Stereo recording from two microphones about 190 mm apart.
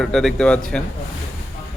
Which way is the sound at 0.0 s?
Centre (ahead or behind).